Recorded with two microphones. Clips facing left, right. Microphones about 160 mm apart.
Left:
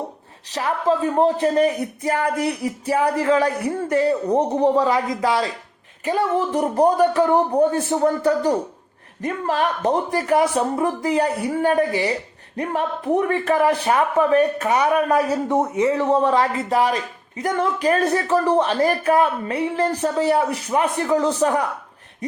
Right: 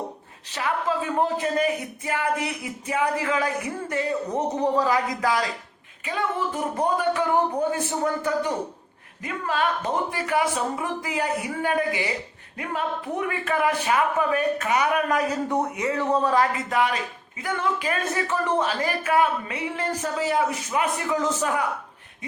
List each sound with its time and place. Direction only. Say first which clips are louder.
0.5 s a man's voice: left 5 dB; 35° left (ahead or behind)
6.5 s a man's voice: left 7 dB; 35° left (ahead or behind)